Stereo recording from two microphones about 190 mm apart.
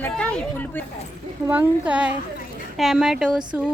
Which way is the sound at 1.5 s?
10° right (ahead or behind).